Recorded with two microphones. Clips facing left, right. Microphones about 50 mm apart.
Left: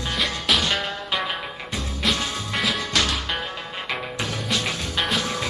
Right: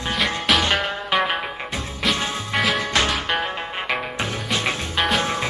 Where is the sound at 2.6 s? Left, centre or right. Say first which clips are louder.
Right 4 dB; centre.